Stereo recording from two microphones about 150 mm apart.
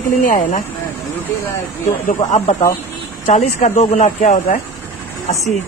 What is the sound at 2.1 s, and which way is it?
Speech, 55° left (ahead or behind).